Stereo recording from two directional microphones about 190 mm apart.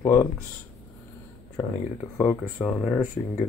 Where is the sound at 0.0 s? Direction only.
20° left (ahead or behind).